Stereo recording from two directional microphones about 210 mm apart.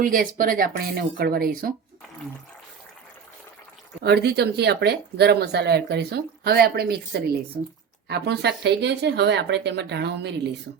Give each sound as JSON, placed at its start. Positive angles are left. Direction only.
{"t": 0.0, "sound": "speech", "side_deg": -40}
{"t": 4.0, "sound": "speech", "side_deg": -50}